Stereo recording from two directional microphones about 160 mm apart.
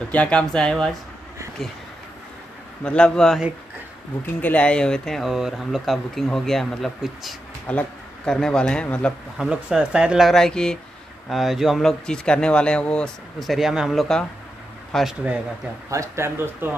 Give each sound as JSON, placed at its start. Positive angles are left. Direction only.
{"t": 0.1, "sound": "speech", "side_deg": 5}
{"t": 2.8, "sound": "speech", "side_deg": 5}
{"t": 9.5, "sound": "speech", "side_deg": -5}
{"t": 15.9, "sound": "speech", "side_deg": -15}